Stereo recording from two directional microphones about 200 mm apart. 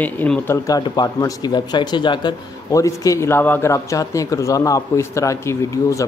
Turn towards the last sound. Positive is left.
turn(degrees=15)  # may be behind; listen again after turning